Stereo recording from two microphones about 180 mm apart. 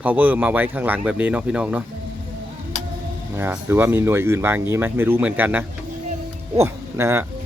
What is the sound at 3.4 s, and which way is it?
A man's voice, 10° right (ahead or behind).